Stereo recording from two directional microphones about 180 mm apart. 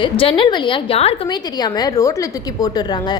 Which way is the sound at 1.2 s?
25° left (ahead or behind).